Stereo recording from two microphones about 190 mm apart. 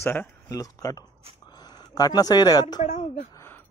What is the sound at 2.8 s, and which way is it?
Speech, 40° left (ahead or behind).